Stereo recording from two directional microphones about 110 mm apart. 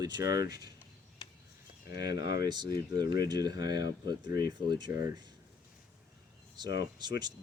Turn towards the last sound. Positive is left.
turn(degrees=-40)  # may be behind; listen again after turning